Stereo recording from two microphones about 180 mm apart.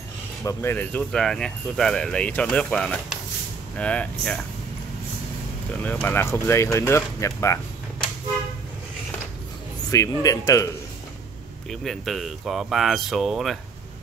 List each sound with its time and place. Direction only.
0.4 s speech: 15° left (ahead or behind)
5.8 s speech: 10° left (ahead or behind)
9.8 s speech: 20° left (ahead or behind)
11.7 s speech: centre (ahead or behind)